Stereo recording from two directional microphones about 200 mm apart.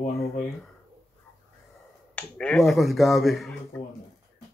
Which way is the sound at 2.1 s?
5° left (ahead or behind).